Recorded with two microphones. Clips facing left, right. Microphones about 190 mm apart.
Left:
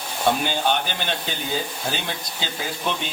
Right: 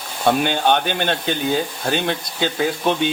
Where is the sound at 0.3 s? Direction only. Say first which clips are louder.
Right 5 dB; 60° right (ahead or behind).